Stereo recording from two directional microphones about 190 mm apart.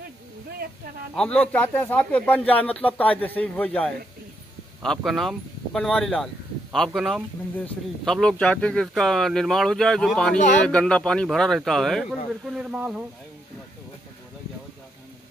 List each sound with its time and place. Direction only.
1.1 s speech: 5° left (ahead or behind)
10.3 s speech: 40° left (ahead or behind)
10.6 s speech: 5° left (ahead or behind)